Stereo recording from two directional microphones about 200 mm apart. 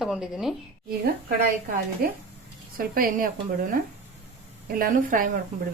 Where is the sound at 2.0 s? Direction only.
50° right (ahead or behind).